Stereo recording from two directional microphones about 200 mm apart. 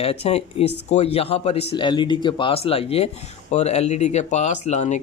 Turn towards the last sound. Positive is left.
turn(degrees=35)  # may be behind; listen again after turning